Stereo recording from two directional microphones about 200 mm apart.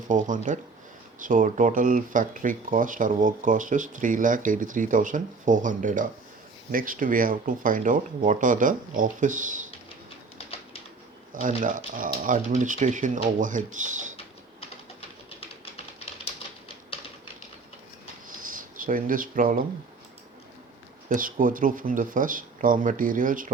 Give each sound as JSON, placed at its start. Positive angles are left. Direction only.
{"t": 0.1, "sound": "speech", "side_deg": -40}
{"t": 11.3, "sound": "speech", "side_deg": -40}
{"t": 18.4, "sound": "speech", "side_deg": -45}
{"t": 21.1, "sound": "speech", "side_deg": -45}